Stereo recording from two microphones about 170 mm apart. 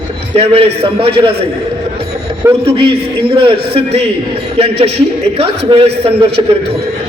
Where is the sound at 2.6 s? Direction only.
30° right (ahead or behind).